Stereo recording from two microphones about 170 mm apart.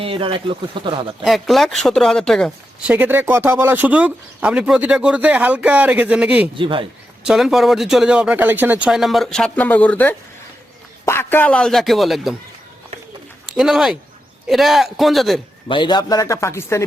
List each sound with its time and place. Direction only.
0.0 s speech: 30° right (ahead or behind)
1.2 s speech: centre (ahead or behind)
2.9 s speech: 10° right (ahead or behind)
6.6 s speech: 30° right (ahead or behind)
7.3 s speech: 5° right (ahead or behind)
13.5 s speech: centre (ahead or behind)
15.7 s a man's voice: 25° left (ahead or behind)